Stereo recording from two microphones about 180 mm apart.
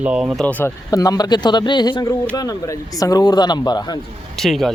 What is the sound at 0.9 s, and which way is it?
Speech, 20° left (ahead or behind).